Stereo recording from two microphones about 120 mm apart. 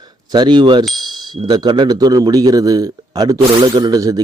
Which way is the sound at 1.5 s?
35° right (ahead or behind).